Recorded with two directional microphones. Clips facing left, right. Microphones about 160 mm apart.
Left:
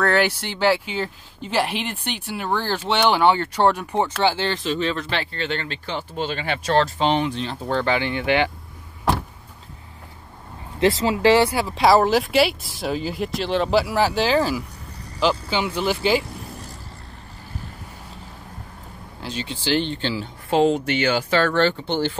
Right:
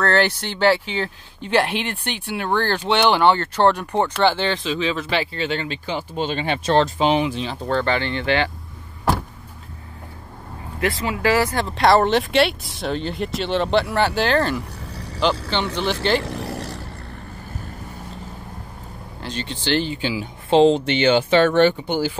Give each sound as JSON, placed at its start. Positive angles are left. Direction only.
{"t": 0.0, "sound": "speech", "side_deg": 10}
{"t": 7.0, "sound": "speech", "side_deg": -5}
{"t": 7.6, "sound": "speech", "side_deg": 10}
{"t": 10.8, "sound": "speech", "side_deg": 25}
{"t": 11.5, "sound": "speech", "side_deg": 5}
{"t": 16.3, "sound": "vehicle", "side_deg": -85}
{"t": 19.2, "sound": "speech", "side_deg": 5}
{"t": 20.4, "sound": "speech", "side_deg": -25}